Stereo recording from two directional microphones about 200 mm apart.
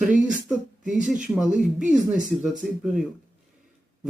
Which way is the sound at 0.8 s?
40° right (ahead or behind).